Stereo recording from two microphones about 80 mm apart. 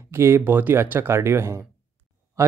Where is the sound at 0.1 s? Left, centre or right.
Right.